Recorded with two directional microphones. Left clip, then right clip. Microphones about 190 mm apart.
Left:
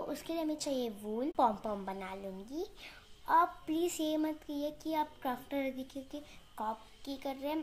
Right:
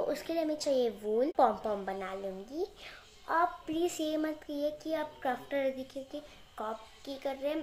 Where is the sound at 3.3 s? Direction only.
25° left (ahead or behind).